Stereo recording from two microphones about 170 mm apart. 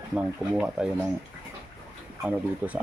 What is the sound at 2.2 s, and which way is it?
Speech, 10° right (ahead or behind).